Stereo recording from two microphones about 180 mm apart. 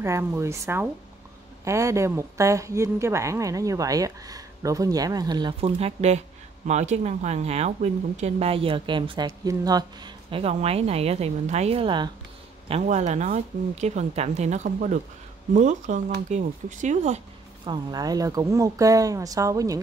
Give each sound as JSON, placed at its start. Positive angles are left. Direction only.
{"t": 0.0, "sound": "a woman's voice", "side_deg": -15}
{"t": 17.6, "sound": "a woman's voice", "side_deg": -20}